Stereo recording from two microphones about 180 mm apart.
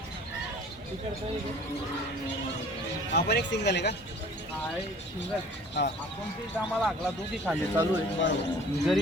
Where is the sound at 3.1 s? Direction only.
70° left (ahead or behind).